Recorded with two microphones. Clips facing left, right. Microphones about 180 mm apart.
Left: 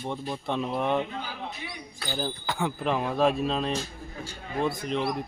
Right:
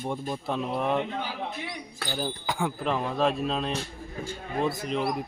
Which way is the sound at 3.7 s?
60° right (ahead or behind).